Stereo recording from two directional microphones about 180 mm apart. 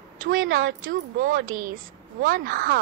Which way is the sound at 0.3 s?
90° right.